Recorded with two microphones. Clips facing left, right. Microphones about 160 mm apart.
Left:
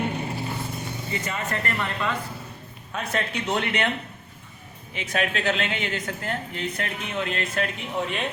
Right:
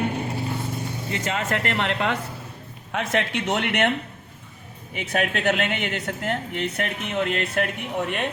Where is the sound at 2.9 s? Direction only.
85° right; by 3.9 s 65° right (ahead or behind).